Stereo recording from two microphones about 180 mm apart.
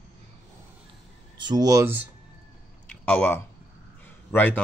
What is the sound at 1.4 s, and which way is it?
Speech, 20° right (ahead or behind).